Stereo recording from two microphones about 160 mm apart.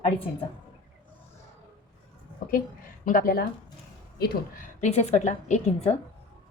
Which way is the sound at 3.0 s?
60° left (ahead or behind).